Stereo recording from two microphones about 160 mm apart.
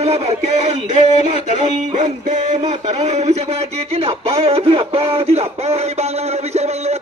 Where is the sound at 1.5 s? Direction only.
50° right (ahead or behind).